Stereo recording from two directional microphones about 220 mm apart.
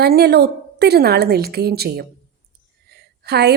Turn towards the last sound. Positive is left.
turn(degrees=-45)  # may be behind; listen again after turning